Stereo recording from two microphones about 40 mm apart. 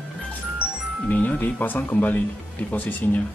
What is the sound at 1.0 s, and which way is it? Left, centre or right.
Speech, left.